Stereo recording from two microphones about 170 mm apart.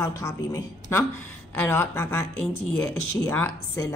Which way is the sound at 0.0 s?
20° left (ahead or behind).